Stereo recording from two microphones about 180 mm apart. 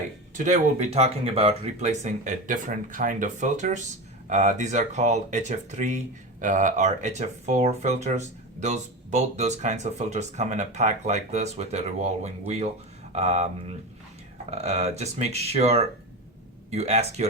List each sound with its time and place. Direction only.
0.3 s speech: 40° right (ahead or behind)
14.5 s speech: 35° right (ahead or behind)